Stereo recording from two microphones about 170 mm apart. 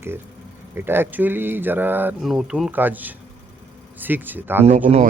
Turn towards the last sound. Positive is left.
turn(degrees=-45)  # may be behind; listen again after turning